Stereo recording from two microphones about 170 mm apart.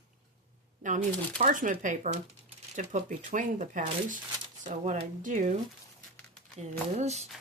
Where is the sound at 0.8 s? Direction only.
50° right (ahead or behind).